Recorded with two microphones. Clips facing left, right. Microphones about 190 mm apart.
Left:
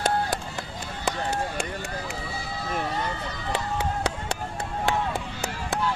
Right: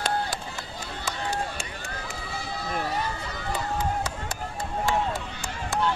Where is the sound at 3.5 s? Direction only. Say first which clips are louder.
Even; 70° left (ahead or behind).